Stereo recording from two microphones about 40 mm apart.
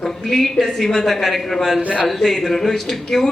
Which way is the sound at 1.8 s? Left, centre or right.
Right.